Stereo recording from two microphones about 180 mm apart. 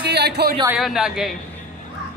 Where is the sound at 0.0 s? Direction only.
65° right (ahead or behind).